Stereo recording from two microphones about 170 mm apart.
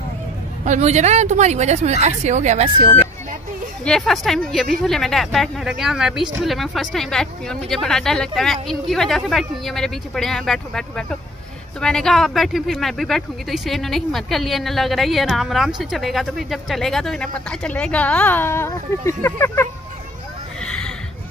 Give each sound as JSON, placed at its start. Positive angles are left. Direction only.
{"t": 0.7, "sound": "speech", "side_deg": -40}
{"t": 3.8, "sound": "speech", "side_deg": 5}
{"t": 20.6, "sound": "a sound", "side_deg": 5}